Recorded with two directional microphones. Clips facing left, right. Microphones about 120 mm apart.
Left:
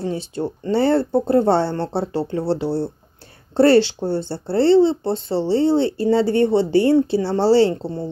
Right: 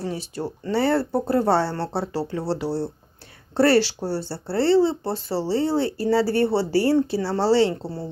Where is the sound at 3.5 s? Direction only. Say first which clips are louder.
Left 4 dB; 25° left (ahead or behind).